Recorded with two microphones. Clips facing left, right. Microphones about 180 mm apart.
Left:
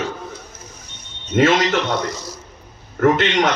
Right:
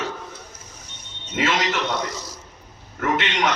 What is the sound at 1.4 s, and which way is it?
Speech, 50° left (ahead or behind).